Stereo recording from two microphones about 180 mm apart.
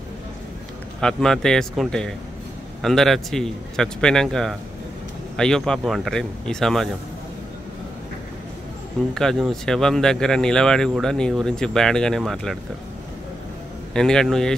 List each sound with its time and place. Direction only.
1.0 s speech: 5° left (ahead or behind)
9.1 s speech: 5° left (ahead or behind)
13.9 s speech: 5° left (ahead or behind)